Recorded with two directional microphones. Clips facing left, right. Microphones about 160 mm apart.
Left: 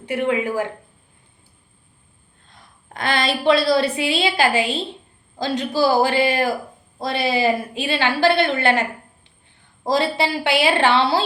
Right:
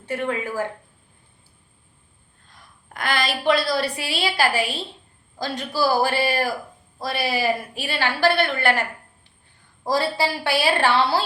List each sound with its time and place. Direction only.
0.0 s speech: 15° left (ahead or behind)
2.9 s a woman's voice: 25° left (ahead or behind)